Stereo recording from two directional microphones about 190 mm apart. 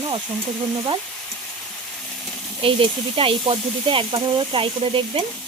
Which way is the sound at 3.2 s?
25° right (ahead or behind).